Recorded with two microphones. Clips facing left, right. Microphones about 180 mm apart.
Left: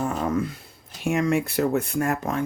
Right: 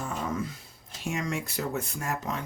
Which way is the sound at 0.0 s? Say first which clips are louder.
Left 7 dB; 60° left (ahead or behind).